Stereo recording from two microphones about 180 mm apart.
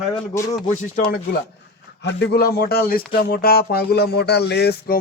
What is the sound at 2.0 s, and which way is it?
Speech, 70° left (ahead or behind).